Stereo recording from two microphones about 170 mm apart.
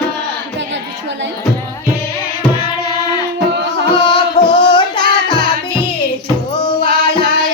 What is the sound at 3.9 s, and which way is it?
Music, 30° left (ahead or behind).